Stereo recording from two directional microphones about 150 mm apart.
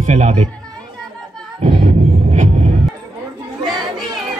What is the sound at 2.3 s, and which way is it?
Music, 55° right (ahead or behind).